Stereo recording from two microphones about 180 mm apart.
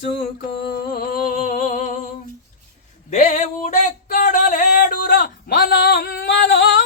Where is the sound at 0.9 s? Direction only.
55° left (ahead or behind).